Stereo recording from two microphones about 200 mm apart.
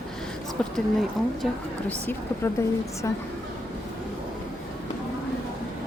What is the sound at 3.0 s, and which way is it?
Speech, 15° left (ahead or behind).